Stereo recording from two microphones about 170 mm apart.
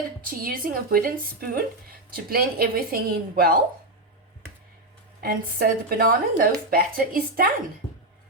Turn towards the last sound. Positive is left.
turn(degrees=-55)  # may be behind; listen again after turning